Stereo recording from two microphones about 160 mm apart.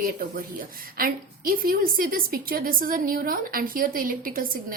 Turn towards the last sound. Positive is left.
turn(degrees=-60)  # may be behind; listen again after turning